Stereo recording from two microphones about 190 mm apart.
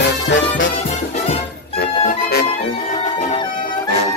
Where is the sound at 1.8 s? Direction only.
55° left (ahead or behind).